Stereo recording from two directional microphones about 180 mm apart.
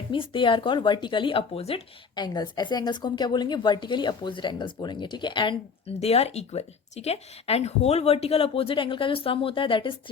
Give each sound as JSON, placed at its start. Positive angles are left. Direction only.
{"t": 0.1, "sound": "speech", "side_deg": 25}